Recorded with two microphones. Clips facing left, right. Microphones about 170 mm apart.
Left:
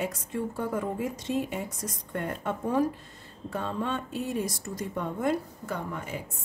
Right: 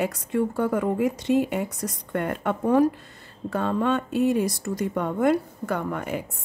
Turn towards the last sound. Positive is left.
turn(degrees=-65)  # may be behind; listen again after turning